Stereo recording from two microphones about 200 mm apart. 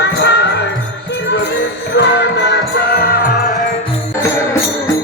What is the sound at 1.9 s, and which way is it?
Music, 60° left (ahead or behind).